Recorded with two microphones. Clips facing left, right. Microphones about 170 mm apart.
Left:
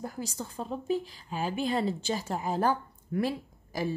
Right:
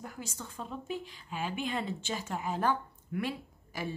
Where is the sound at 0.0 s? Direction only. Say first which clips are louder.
Left 6 dB; 35° left (ahead or behind).